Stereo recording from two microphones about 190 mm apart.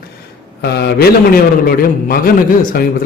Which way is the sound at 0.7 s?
55° left (ahead or behind).